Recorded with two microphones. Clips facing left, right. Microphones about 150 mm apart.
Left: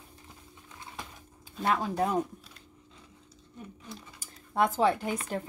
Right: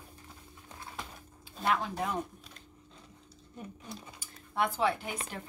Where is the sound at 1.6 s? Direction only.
35° left (ahead or behind).